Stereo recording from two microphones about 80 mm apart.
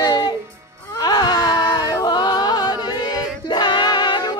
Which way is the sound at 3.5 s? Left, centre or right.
Left.